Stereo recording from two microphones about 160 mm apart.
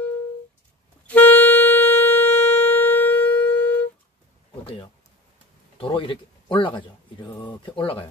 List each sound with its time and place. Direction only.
1.0 s music: 10° left (ahead or behind)
4.6 s a sound: 30° left (ahead or behind)
5.8 s speech: 30° left (ahead or behind)